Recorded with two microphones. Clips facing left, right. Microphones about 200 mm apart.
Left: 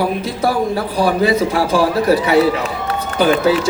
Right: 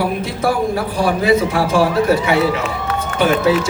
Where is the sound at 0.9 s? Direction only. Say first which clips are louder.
Even; 30° left (ahead or behind).